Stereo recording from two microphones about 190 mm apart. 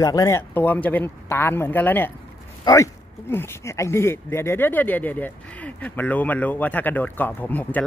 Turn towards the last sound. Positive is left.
turn(degrees=10)  # may be behind; listen again after turning